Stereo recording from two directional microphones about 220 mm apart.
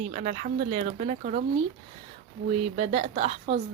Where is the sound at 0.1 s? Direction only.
35° right (ahead or behind).